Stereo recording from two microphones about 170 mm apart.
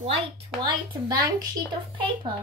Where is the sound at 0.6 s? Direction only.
25° right (ahead or behind).